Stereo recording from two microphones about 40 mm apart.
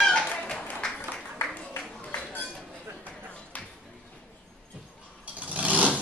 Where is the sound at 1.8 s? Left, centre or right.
Left.